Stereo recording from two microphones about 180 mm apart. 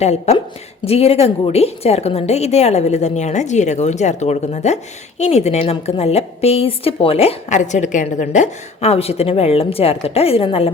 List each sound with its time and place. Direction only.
0.0 s a woman's voice: 35° left (ahead or behind)